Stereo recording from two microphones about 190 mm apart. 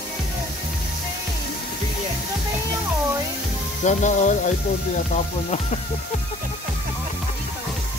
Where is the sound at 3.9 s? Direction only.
40° left (ahead or behind).